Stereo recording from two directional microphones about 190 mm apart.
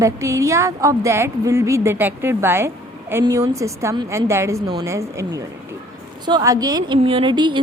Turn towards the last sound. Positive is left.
turn(degrees=-25)  # may be behind; listen again after turning